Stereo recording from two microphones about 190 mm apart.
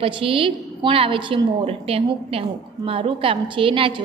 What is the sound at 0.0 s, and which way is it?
A woman's voice, 30° right (ahead or behind).